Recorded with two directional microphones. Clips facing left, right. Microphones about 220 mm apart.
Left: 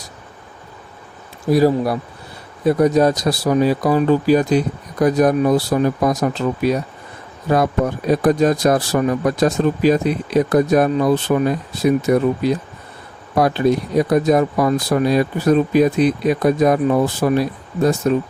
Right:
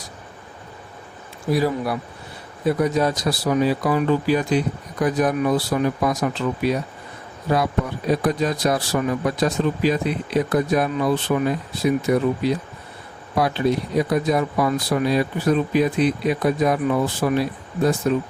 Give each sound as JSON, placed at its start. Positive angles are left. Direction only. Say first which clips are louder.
{"t": 1.5, "sound": "speech", "louder": "left 6 dB", "side_deg": 40}